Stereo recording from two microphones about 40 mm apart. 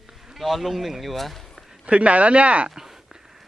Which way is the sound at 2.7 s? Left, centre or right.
Centre.